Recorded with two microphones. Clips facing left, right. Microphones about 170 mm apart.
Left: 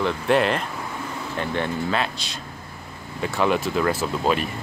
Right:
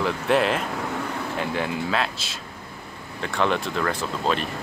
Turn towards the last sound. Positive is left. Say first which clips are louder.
# left 3 dB
turn(degrees=5)  # may be behind; listen again after turning